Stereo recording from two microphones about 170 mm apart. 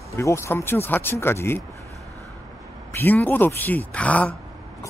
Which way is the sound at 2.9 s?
10° left (ahead or behind).